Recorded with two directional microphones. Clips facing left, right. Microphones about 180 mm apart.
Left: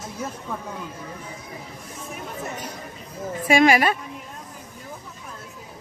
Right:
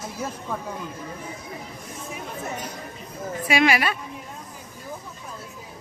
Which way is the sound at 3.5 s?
45° left (ahead or behind).